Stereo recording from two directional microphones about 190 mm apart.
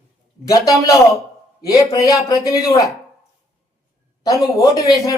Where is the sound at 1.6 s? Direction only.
20° left (ahead or behind).